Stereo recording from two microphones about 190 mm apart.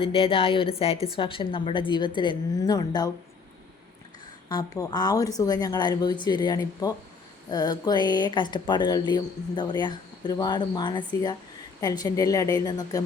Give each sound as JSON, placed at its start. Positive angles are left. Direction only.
{"t": 0.0, "sound": "speech", "side_deg": 30}
{"t": 4.4, "sound": "speech", "side_deg": 20}